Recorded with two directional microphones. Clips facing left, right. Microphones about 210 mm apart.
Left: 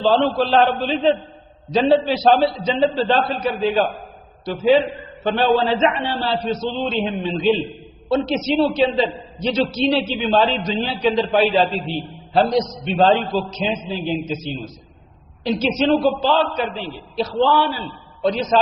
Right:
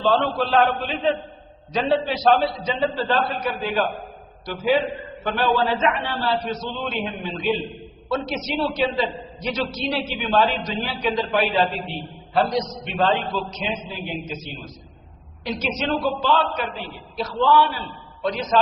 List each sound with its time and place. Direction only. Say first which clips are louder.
0.0 s a man's voice: left 4 dB; 30° left (ahead or behind)
5.2 s a man's voice: left 4 dB; 25° left (ahead or behind)